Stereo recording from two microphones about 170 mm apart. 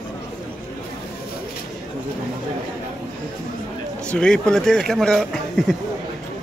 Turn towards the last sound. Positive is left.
turn(degrees=0)  # may be behind; listen again after turning